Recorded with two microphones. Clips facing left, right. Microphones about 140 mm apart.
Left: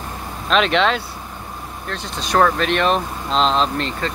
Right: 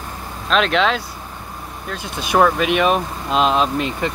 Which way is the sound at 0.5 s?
Centre (ahead or behind).